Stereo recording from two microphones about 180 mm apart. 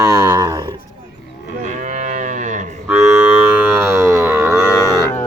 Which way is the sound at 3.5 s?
10° right (ahead or behind).